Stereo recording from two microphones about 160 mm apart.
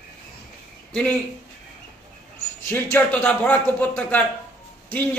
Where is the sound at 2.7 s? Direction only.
10° left (ahead or behind).